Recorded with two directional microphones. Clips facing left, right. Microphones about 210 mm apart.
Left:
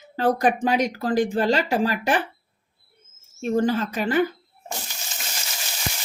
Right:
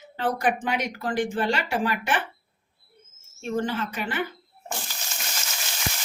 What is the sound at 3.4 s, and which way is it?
Speech, 40° left (ahead or behind).